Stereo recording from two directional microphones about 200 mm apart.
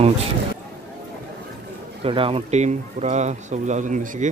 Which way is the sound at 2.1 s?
25° right (ahead or behind).